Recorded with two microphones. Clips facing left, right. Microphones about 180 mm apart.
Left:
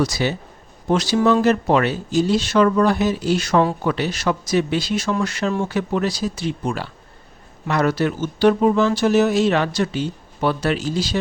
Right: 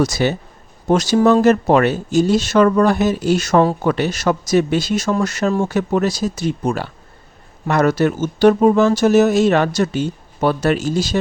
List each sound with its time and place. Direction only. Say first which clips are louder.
0.0 s speech: right 4 dB; 45° right (ahead or behind)